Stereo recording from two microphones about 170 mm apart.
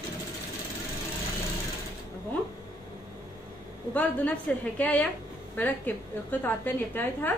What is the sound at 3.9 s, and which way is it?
A woman's voice, 10° left (ahead or behind).